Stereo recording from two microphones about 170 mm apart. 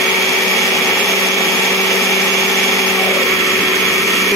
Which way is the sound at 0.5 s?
Centre (ahead or behind).